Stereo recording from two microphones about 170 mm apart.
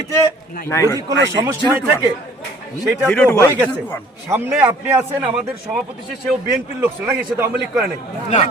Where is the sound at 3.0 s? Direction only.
10° left (ahead or behind).